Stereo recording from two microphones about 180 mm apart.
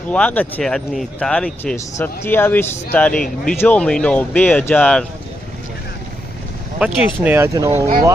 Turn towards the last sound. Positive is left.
turn(degrees=-20)  # may be behind; listen again after turning